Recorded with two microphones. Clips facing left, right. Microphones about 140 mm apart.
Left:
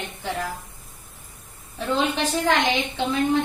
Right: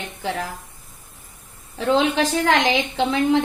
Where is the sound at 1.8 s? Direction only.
90° right.